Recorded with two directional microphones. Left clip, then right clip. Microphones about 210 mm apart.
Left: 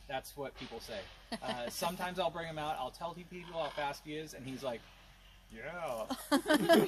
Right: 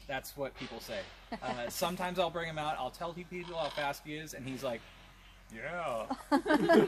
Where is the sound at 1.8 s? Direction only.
30° right (ahead or behind).